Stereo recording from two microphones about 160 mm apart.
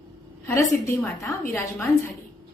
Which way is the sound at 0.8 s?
15° left (ahead or behind).